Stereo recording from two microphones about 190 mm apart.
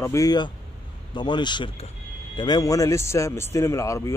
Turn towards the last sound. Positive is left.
turn(degrees=15)  # may be behind; listen again after turning